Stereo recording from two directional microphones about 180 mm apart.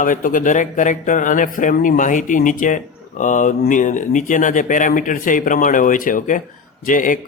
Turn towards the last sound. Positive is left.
turn(degrees=45)  # may be behind; listen again after turning